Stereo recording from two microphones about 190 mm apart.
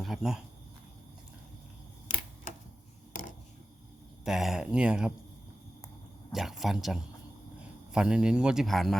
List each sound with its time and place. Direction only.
0.0 s speech: centre (ahead or behind)
3.1 s a sound: 45° left (ahead or behind)
4.3 s speech: centre (ahead or behind)
6.3 s speech: centre (ahead or behind)